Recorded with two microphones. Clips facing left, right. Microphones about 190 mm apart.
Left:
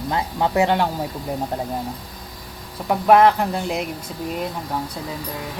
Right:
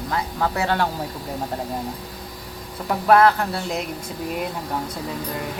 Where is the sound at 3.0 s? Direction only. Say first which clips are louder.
Left 2 dB; 10° left (ahead or behind).